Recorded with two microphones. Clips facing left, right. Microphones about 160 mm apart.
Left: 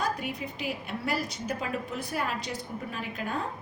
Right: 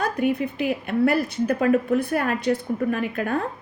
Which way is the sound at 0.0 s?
55° right (ahead or behind).